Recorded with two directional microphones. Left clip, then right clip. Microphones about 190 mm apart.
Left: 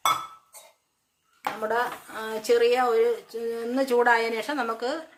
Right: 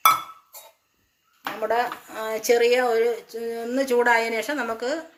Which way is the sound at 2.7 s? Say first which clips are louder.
Right 1 dB; centre (ahead or behind).